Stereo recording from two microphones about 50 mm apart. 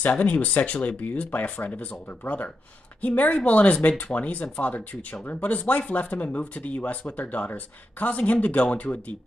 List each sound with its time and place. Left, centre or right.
0.0 s speech: left